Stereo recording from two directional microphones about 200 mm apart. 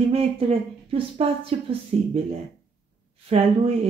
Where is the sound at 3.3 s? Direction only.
30° right (ahead or behind).